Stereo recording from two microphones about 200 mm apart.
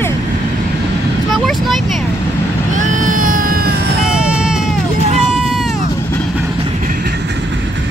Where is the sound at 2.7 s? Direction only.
40° right (ahead or behind).